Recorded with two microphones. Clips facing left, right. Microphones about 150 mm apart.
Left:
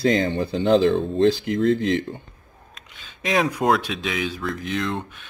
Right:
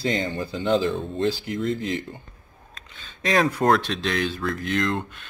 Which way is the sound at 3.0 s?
5° left (ahead or behind).